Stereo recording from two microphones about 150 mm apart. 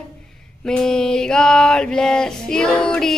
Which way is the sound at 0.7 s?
5° left (ahead or behind).